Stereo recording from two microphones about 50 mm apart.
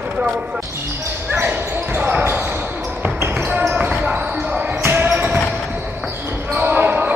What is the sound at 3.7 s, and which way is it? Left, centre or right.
Basketball bounce, right.